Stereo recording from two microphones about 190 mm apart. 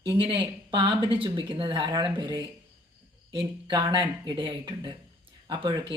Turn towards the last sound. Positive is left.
turn(degrees=-25)  # may be behind; listen again after turning